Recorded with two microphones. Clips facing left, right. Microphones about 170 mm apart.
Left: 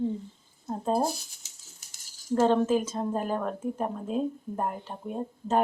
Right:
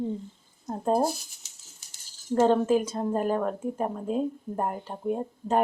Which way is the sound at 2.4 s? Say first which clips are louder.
Right 2 dB; 10° right (ahead or behind).